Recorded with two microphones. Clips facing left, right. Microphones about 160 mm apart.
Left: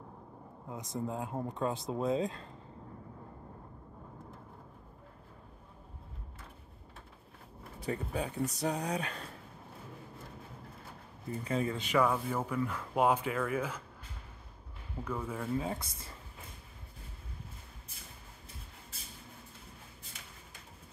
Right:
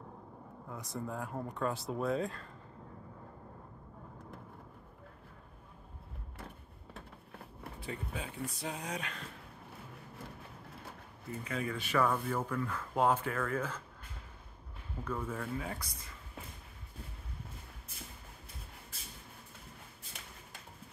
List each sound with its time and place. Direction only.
0.7 s speech: 20° left (ahead or behind)
7.8 s speech: 40° left (ahead or behind)
11.4 s speech: 25° left (ahead or behind); by 13.8 s 10° left (ahead or behind)
15.0 s speech: 10° left (ahead or behind)
15.5 s speech: 25° left (ahead or behind)